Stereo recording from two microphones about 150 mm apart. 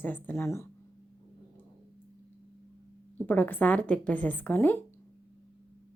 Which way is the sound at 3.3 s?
10° left (ahead or behind).